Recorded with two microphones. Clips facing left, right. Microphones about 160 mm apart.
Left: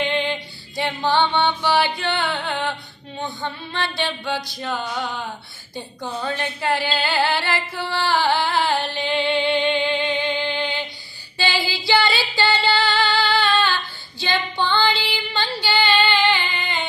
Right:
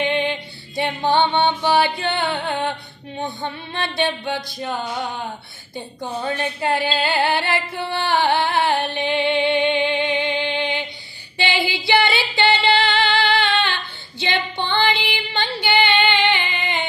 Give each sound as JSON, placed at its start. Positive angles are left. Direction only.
{"t": 0.0, "sound": "female singing", "side_deg": -20}
{"t": 1.1, "sound": "music", "side_deg": -25}
{"t": 11.3, "sound": "singing", "side_deg": -25}
{"t": 14.2, "sound": "female singing", "side_deg": -25}
{"t": 16.0, "sound": "singing", "side_deg": -20}